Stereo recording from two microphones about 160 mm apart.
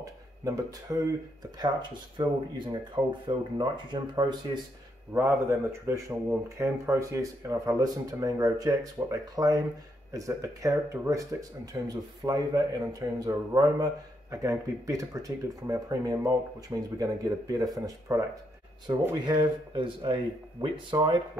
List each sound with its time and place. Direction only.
0.0 s a man's voice: 20° right (ahead or behind)